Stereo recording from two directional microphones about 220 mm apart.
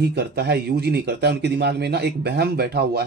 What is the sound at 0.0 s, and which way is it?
Speech, 50° right (ahead or behind).